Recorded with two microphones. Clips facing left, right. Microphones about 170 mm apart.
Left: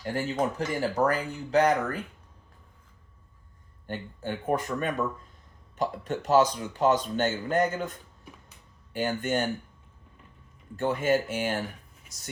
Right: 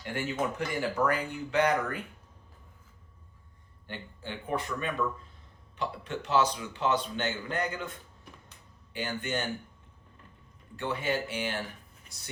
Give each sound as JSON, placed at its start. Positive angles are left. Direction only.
{"t": 0.0, "sound": "speech", "side_deg": 35}
{"t": 3.8, "sound": "speech", "side_deg": 45}
{"t": 10.8, "sound": "speech", "side_deg": 45}
{"t": 12.1, "sound": "a sound", "side_deg": 5}